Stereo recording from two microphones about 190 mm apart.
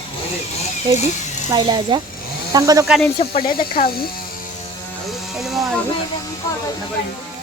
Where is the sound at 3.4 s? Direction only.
50° left (ahead or behind).